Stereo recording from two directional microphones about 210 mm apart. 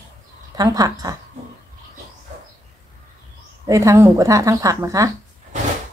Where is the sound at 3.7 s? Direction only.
15° right (ahead or behind).